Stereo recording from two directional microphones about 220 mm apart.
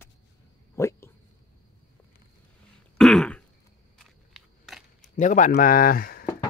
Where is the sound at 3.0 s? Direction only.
Centre (ahead or behind).